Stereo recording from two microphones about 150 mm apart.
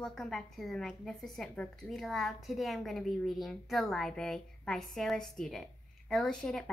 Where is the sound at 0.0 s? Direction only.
Centre (ahead or behind).